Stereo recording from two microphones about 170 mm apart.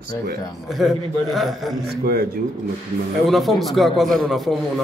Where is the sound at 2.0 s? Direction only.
65° right (ahead or behind).